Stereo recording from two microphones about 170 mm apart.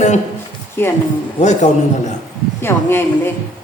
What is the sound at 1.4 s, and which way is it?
Speech, 45° left (ahead or behind).